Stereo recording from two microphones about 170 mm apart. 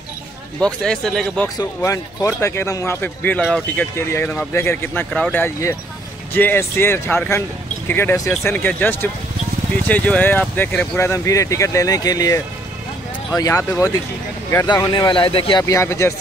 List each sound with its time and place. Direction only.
0.6 s speech: 5° left (ahead or behind)
1.6 s speech: 15° left (ahead or behind)
3.9 s speech: 15° left (ahead or behind)
13.4 s speech: 20° left (ahead or behind)
15.6 s speech: 15° left (ahead or behind)